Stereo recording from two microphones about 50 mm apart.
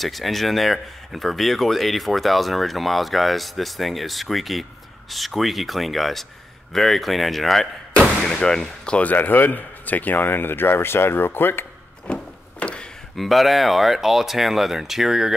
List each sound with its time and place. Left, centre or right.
0.0 s speech: centre
8.3 s speech: centre
9.0 s speech: left
12.1 s a sound: left
13.1 s speech: centre